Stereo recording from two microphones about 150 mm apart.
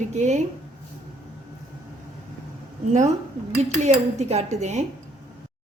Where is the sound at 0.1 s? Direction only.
50° right (ahead or behind).